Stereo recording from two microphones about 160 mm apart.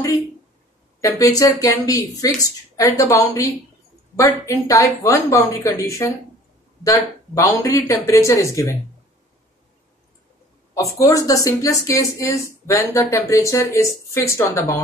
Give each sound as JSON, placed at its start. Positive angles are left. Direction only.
{"t": 1.0, "sound": "speech", "side_deg": 20}
{"t": 10.8, "sound": "speech", "side_deg": 20}